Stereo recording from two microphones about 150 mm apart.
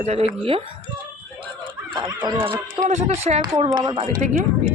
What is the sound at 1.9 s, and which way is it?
Speech, 30° right (ahead or behind).